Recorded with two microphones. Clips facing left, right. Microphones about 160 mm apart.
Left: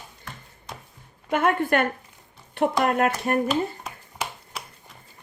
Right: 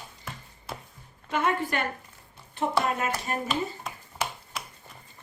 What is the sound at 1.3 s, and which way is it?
Speech, 55° left (ahead or behind).